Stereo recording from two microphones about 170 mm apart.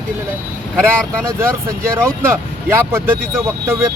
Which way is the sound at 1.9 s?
15° right (ahead or behind).